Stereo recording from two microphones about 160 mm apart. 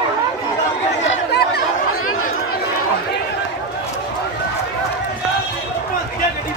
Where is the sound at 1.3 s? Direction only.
90° left.